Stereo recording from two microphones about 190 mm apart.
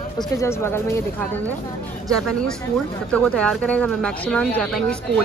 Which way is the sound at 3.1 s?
5° left (ahead or behind).